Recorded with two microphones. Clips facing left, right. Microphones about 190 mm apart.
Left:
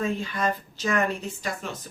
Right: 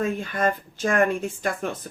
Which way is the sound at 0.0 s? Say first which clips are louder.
Right 3 dB; 50° right (ahead or behind).